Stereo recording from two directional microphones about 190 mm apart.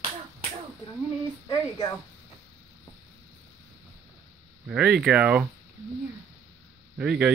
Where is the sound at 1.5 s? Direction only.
20° left (ahead or behind).